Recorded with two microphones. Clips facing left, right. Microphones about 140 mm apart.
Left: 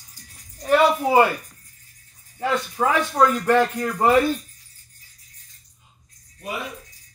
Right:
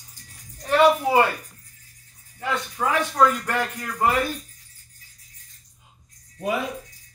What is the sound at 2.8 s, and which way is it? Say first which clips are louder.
Speech: left 1 dB; 25° left (ahead or behind).